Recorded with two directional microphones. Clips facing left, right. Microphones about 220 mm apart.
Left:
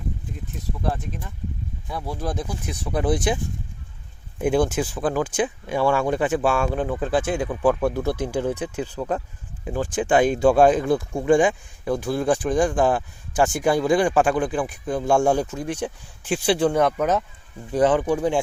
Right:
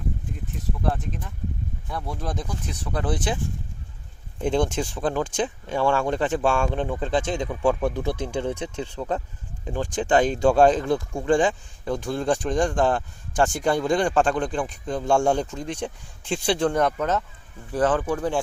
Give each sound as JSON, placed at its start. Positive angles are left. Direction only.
{"t": 0.8, "sound": "speech", "side_deg": 0}
{"t": 4.4, "sound": "speech", "side_deg": 10}
{"t": 7.9, "sound": "speech", "side_deg": -15}
{"t": 8.7, "sound": "speech", "side_deg": 10}